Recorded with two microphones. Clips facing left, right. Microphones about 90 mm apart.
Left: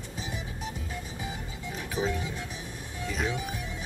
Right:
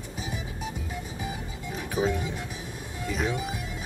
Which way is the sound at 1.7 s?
5° right (ahead or behind).